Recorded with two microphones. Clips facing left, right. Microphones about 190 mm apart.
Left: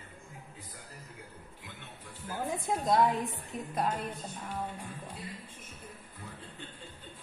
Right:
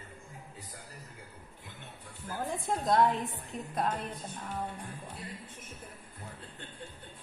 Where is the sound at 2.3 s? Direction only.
Centre (ahead or behind).